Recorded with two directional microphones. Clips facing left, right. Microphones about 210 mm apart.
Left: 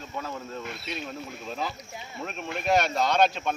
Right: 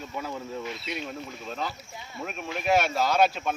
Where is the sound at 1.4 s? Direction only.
5° left (ahead or behind).